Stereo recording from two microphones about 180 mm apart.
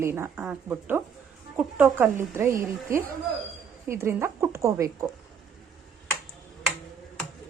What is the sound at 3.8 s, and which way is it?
A woman's voice, 15° right (ahead or behind).